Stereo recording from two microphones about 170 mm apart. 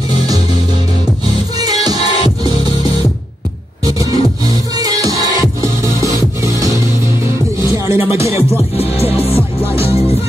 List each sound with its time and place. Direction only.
1.6 s music: 25° right (ahead or behind)
3.8 s music: 20° right (ahead or behind)
6.0 s music: 20° left (ahead or behind)
7.7 s music: 15° right (ahead or behind)
8.5 s music: 35° left (ahead or behind)